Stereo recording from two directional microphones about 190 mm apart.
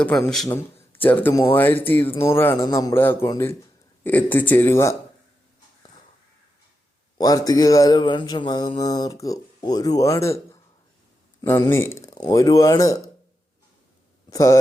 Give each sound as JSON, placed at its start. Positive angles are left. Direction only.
{"t": 0.0, "sound": "a man's voice", "side_deg": 5}
{"t": 7.2, "sound": "speech", "side_deg": 20}
{"t": 14.3, "sound": "speech", "side_deg": 15}